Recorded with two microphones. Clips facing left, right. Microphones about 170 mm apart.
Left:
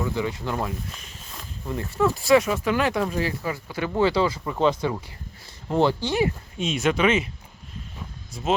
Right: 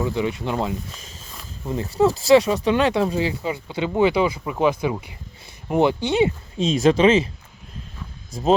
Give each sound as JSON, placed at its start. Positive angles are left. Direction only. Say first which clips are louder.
{"t": 0.0, "sound": "speech", "louder": "right 3 dB", "side_deg": -20}
{"t": 2.0, "sound": "speech", "louder": "right 4 dB", "side_deg": -35}
{"t": 8.3, "sound": "speech", "louder": "right 6 dB", "side_deg": -90}